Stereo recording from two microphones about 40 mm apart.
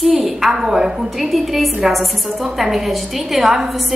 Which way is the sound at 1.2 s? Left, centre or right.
Centre.